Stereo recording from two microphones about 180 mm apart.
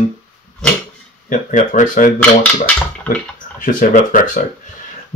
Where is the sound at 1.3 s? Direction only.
45° left (ahead or behind).